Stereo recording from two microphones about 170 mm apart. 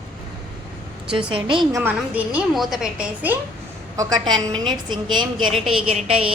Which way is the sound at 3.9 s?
25° right (ahead or behind).